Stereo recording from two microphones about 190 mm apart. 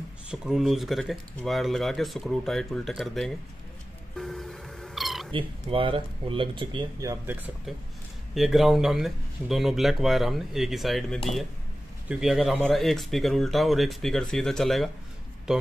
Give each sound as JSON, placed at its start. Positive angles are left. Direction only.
{"t": 0.3, "sound": "speech", "side_deg": -5}
{"t": 4.2, "sound": "cat", "side_deg": 0}
{"t": 5.3, "sound": "speech", "side_deg": -30}